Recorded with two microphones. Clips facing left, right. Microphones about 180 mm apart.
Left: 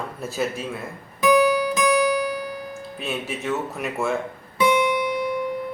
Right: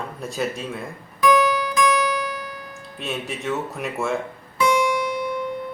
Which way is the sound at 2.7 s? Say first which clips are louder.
Left 1 dB; centre (ahead or behind).